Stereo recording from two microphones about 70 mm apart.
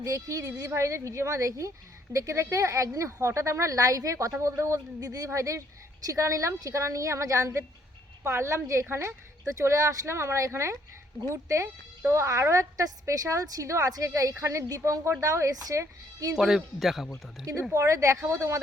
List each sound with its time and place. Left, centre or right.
0.0 s speech: right
0.7 s speech: right
4.3 s a woman's voice: right
9.5 s speech: right
16.4 s speech: centre
17.4 s speech: right